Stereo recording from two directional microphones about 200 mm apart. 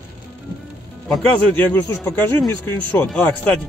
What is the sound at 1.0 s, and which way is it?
Speech, 5° left (ahead or behind).